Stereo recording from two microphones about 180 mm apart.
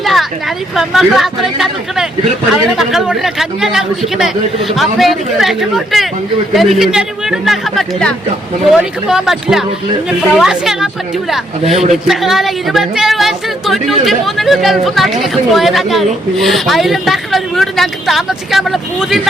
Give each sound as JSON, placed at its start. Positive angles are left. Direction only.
{"t": 0.0, "sound": "a woman's voice", "side_deg": 0}
{"t": 11.6, "sound": "a man's voice", "side_deg": -35}
{"t": 12.0, "sound": "a woman's voice", "side_deg": 0}